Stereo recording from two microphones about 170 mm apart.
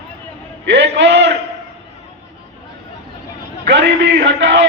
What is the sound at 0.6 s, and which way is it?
Speech, 90° right.